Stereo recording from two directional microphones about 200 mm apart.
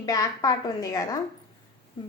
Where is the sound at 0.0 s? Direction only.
20° left (ahead or behind).